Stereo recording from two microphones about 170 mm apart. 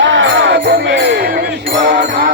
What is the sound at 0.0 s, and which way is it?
Music, 90° right.